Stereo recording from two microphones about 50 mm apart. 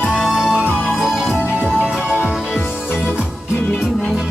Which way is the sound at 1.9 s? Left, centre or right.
Centre.